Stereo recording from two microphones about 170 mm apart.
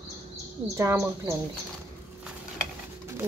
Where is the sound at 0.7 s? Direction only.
15° right (ahead or behind).